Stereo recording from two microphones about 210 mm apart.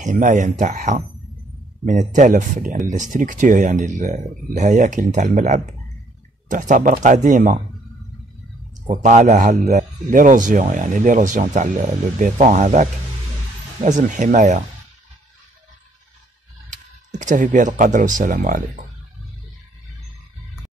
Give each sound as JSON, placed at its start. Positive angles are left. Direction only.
{"t": 0.0, "sound": "a man's voice", "side_deg": -40}
{"t": 8.8, "sound": "a man's voice", "side_deg": -40}
{"t": 13.8, "sound": "a man's voice", "side_deg": -35}
{"t": 16.7, "sound": "speech", "side_deg": -35}